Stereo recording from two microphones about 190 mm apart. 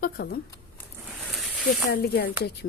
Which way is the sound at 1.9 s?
55° left (ahead or behind).